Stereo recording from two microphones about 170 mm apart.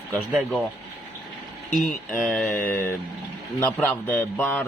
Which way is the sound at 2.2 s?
Centre (ahead or behind).